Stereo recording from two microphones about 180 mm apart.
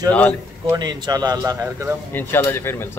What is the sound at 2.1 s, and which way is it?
Speech, 15° left (ahead or behind).